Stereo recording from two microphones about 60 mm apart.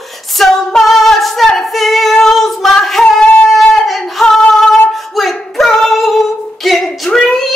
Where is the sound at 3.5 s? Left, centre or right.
Centre.